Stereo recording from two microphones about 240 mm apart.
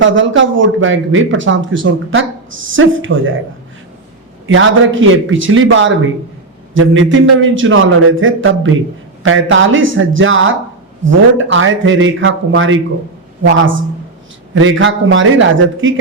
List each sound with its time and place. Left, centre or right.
0.0 s speech: right
4.4 s speech: right